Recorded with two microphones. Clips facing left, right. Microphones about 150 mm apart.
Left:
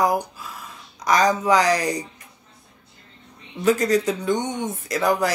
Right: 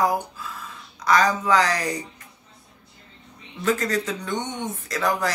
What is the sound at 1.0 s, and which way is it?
Speech, 15° left (ahead or behind).